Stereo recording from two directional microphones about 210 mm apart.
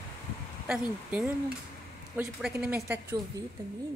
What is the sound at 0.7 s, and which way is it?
Speech, 5° right (ahead or behind).